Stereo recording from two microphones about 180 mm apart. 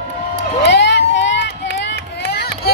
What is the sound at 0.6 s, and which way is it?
Run, 70° left (ahead or behind).